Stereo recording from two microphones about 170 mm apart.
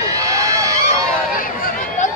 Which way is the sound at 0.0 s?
20° right (ahead or behind).